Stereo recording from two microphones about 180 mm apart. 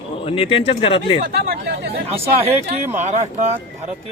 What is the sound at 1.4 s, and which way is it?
Chatter, 55° right (ahead or behind).